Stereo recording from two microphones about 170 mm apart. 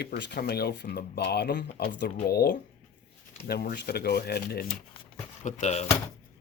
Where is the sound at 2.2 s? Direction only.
70° left (ahead or behind).